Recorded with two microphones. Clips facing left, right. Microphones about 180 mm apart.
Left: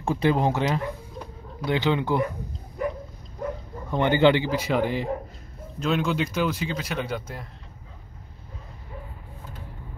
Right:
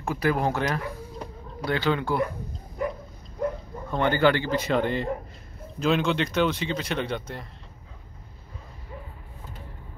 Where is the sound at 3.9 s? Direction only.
15° left (ahead or behind).